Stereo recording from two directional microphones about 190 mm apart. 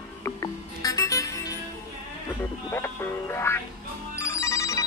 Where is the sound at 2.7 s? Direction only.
10° left (ahead or behind).